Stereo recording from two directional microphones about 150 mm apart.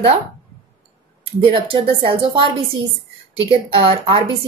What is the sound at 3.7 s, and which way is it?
Speech, 35° right (ahead or behind).